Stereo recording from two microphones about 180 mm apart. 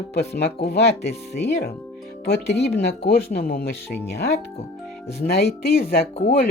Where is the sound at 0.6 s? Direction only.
65° left (ahead or behind).